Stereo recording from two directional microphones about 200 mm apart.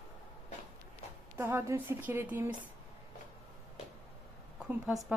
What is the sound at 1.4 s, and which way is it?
Speech, 15° right (ahead or behind).